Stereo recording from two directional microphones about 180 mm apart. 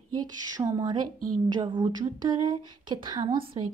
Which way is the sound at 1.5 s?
25° right (ahead or behind).